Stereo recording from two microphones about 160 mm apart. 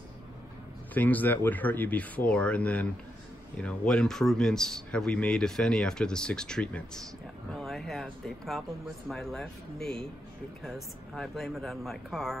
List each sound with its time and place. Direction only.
0.9 s a man's voice: 10° left (ahead or behind)